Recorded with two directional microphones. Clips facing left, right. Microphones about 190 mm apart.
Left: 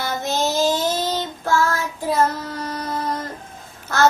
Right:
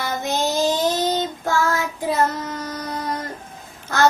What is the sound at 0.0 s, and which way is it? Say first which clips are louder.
Child singing: even; 15° right (ahead or behind).